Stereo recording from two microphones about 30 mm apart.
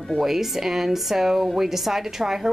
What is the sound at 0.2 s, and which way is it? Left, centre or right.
A woman's voice, centre.